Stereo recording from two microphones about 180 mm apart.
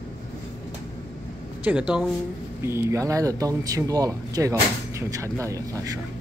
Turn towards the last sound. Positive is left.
turn(degrees=-20)  # may be behind; listen again after turning